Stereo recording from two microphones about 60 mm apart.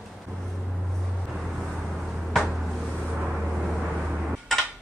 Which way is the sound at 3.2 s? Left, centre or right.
Centre.